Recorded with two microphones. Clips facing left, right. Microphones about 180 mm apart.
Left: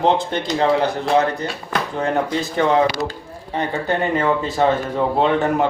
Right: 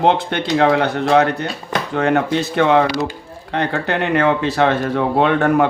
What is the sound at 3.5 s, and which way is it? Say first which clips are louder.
Speech: right 2 dB; 75° right (ahead or behind).